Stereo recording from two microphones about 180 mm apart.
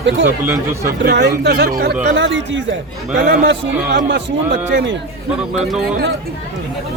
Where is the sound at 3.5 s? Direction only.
75° right (ahead or behind).